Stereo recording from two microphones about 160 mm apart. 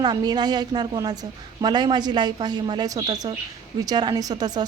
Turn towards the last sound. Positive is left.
turn(degrees=-25)  # may be behind; listen again after turning